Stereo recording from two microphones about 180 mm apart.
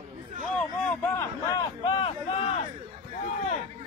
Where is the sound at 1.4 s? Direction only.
25° left (ahead or behind).